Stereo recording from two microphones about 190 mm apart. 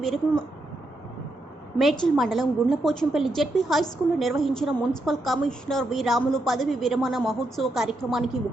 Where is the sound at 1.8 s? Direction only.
Centre (ahead or behind).